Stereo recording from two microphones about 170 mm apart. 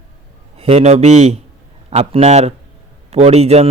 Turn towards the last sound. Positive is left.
turn(degrees=-40)  # may be behind; listen again after turning